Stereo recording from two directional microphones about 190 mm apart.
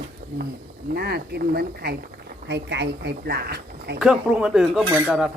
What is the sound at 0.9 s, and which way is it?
Speech, 55° right (ahead or behind).